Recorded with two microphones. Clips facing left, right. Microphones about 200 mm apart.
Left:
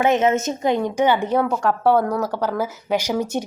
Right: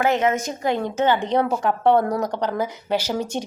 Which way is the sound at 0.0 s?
20° left (ahead or behind).